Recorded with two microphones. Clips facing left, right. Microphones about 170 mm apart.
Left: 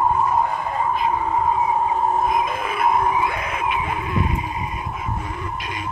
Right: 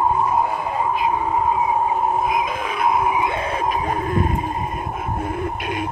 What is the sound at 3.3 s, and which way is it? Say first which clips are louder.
Howl: right 2 dB; 30° right (ahead or behind).